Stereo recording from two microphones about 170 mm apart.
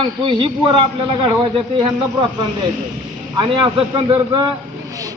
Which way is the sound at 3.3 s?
30° right (ahead or behind).